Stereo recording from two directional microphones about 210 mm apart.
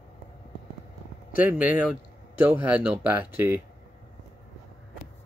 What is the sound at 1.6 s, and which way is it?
Speech, 5° right (ahead or behind).